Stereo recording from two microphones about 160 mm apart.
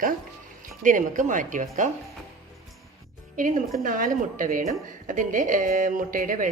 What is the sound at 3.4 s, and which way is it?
A woman's voice, 55° right (ahead or behind).